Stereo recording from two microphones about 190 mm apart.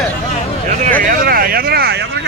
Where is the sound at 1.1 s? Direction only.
50° right (ahead or behind).